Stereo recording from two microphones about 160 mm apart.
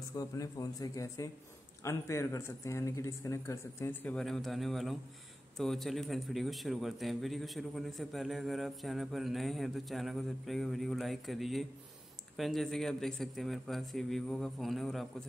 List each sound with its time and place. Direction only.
0.1 s a man's voice: 20° left (ahead or behind)
4.1 s a man's voice: centre (ahead or behind)